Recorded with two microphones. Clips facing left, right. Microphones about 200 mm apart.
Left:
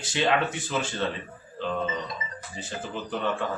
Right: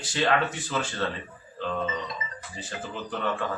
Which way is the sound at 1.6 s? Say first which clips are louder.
Left 1 dB; 15° left (ahead or behind).